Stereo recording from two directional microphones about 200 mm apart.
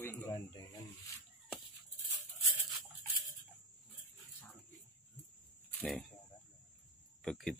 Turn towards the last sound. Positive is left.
turn(degrees=5)  # may be behind; listen again after turning